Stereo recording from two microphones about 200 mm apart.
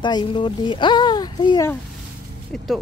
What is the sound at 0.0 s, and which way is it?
Speech, 25° left (ahead or behind).